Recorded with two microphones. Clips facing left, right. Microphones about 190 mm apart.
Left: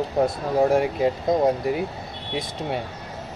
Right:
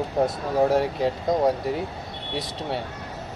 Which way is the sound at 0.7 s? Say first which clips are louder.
Left 2 dB; 10° left (ahead or behind).